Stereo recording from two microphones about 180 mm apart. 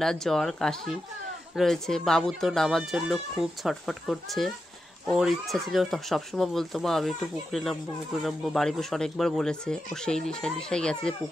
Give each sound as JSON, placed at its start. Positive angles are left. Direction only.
{"t": 0.0, "sound": "speech", "side_deg": 0}